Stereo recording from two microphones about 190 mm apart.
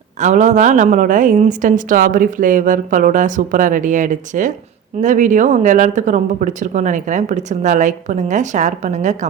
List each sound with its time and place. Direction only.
0.2 s a woman's voice: 40° right (ahead or behind)